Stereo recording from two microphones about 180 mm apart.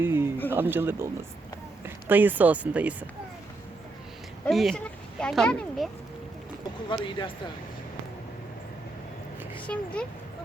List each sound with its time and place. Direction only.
0.0 s a sound: 15° right (ahead or behind)
0.5 s speech: 10° right (ahead or behind)
4.4 s speech: centre (ahead or behind)
6.8 s speech: 25° left (ahead or behind)
9.6 s speech: 5° left (ahead or behind)